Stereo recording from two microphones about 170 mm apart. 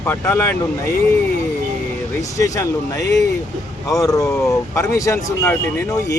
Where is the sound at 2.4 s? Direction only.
20° left (ahead or behind).